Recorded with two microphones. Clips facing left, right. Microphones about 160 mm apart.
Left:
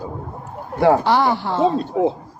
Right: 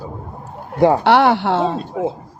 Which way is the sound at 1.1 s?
70° right (ahead or behind).